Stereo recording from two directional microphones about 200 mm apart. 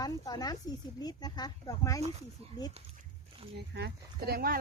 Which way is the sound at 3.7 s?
50° right (ahead or behind).